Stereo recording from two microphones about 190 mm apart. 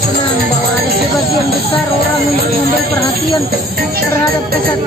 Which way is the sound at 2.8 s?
55° right (ahead or behind).